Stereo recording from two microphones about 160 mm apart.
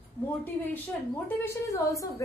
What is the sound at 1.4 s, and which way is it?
Speech, 20° left (ahead or behind).